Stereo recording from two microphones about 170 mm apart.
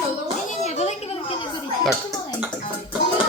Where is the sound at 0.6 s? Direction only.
40° left (ahead or behind).